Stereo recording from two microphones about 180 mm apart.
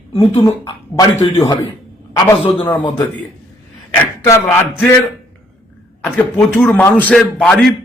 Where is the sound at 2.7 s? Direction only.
25° left (ahead or behind).